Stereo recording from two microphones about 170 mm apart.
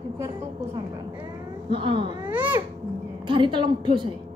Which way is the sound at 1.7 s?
30° right (ahead or behind).